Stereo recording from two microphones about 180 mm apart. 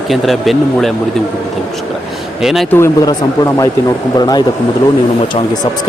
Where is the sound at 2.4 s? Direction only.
Centre (ahead or behind).